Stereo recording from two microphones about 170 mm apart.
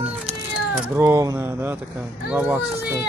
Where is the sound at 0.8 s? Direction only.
15° right (ahead or behind).